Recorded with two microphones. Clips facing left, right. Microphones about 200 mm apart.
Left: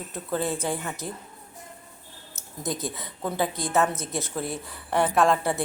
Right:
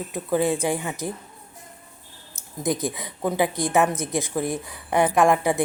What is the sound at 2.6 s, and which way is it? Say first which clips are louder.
Speech: right 6 dB; 15° right (ahead or behind).